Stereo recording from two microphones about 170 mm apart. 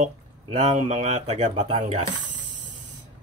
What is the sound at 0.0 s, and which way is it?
Speech, 40° right (ahead or behind).